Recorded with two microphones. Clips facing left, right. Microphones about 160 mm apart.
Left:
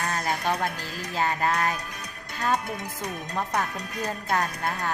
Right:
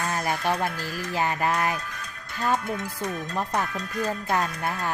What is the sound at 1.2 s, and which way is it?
Speech, 15° right (ahead or behind).